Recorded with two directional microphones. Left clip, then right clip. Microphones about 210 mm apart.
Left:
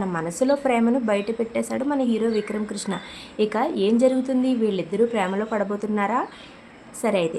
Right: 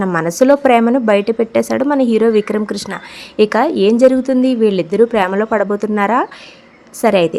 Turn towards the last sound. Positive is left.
turn(degrees=-40)  # may be behind; listen again after turning